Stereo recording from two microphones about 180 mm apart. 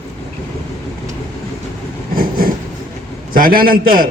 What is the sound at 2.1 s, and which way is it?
Train, 55° right (ahead or behind).